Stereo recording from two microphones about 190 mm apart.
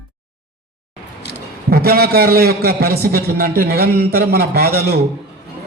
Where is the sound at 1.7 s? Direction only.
55° right (ahead or behind).